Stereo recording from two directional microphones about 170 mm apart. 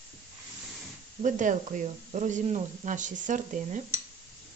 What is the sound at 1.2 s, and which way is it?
Speech, 50° right (ahead or behind).